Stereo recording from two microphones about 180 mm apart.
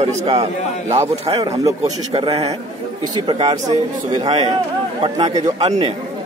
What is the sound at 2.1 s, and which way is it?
A man's voice, 30° right (ahead or behind).